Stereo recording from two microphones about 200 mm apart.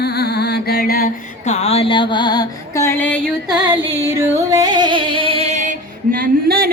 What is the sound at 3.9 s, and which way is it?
Music, 15° right (ahead or behind).